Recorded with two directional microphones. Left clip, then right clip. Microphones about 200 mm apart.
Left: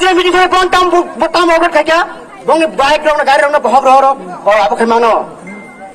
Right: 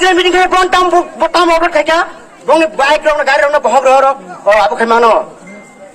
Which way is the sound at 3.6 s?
10° right (ahead or behind).